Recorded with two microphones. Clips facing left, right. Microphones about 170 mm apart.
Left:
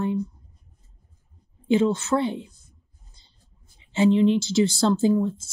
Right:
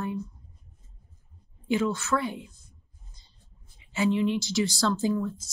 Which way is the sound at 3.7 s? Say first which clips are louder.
Left 6 dB; 30° left (ahead or behind).